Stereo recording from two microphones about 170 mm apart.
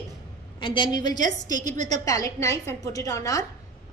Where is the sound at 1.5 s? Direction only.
45° right (ahead or behind).